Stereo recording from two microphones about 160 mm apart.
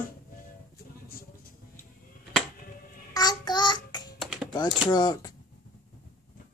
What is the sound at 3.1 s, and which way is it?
Child singing, 25° left (ahead or behind).